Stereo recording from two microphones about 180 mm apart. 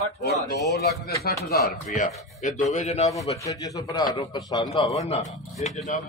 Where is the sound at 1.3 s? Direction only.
60° left (ahead or behind).